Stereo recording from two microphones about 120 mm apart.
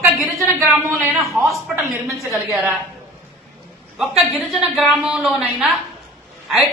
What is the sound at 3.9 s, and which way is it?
A woman's voice, centre (ahead or behind).